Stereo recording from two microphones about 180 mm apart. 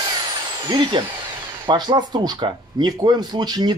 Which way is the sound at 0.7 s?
25° right (ahead or behind).